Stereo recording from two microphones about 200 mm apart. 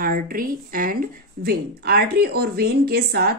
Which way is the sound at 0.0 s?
45° right (ahead or behind).